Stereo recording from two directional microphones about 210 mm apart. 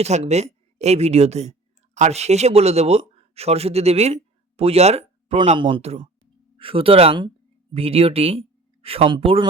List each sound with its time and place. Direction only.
0.0 s a man's voice: 30° right (ahead or behind)